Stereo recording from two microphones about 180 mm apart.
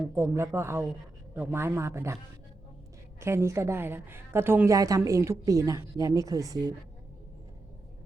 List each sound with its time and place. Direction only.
0.1 s a woman's voice: 15° right (ahead or behind)
3.2 s a woman's voice: 15° right (ahead or behind)